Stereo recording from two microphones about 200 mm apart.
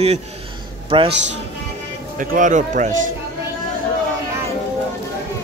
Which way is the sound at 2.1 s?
40° right (ahead or behind).